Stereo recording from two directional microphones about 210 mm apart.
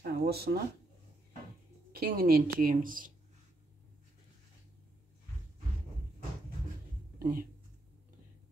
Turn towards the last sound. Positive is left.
turn(degrees=-40)  # may be behind; listen again after turning